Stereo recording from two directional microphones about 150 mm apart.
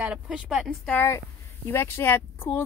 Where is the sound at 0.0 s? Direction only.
5° right (ahead or behind).